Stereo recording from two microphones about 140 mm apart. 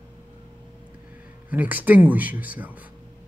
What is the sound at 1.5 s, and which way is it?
Speech, 10° right (ahead or behind).